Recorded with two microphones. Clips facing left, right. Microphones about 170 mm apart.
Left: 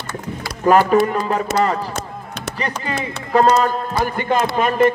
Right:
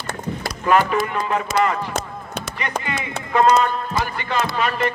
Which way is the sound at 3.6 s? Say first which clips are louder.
Left 3 dB; 45° left (ahead or behind).